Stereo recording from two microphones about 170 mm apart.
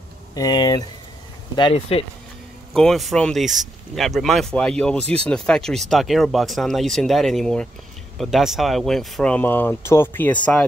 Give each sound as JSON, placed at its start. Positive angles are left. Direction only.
{"t": 0.3, "sound": "speech", "side_deg": 20}
{"t": 2.7, "sound": "speech", "side_deg": 0}